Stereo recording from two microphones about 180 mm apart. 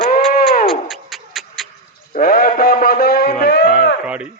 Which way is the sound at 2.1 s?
55° left (ahead or behind).